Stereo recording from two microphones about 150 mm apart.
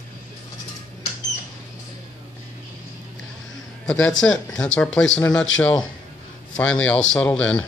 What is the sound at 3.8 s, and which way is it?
A man's voice, 5° left (ahead or behind).